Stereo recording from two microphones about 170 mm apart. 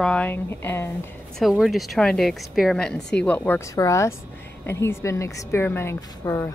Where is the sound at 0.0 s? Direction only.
5° left (ahead or behind).